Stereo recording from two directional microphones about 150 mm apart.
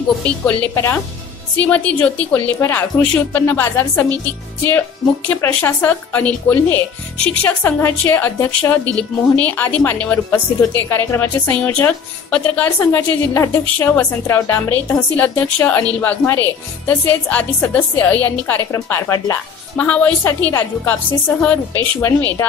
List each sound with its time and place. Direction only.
1.6 s a woman's voice: 10° left (ahead or behind)
19.8 s a woman's voice: 10° left (ahead or behind)